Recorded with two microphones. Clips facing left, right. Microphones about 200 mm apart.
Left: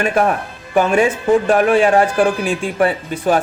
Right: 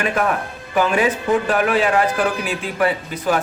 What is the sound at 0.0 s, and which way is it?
Speech, 35° left (ahead or behind).